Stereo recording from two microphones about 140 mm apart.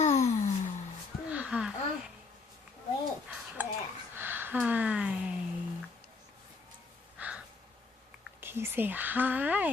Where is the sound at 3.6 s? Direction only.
10° right (ahead or behind).